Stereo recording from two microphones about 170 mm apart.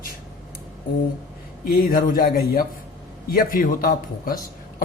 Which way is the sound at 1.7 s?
60° left (ahead or behind).